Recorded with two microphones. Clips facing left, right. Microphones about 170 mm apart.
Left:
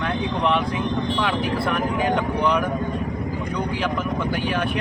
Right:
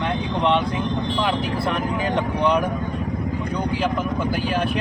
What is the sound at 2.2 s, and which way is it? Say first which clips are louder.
Speech: right 1 dB; 30° right (ahead or behind).